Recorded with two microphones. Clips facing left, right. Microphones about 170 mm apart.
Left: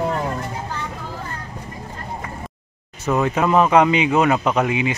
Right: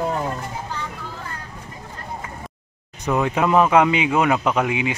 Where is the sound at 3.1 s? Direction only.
5° right (ahead or behind).